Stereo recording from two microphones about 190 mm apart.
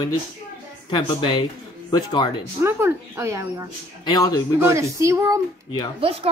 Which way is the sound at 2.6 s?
15° right (ahead or behind).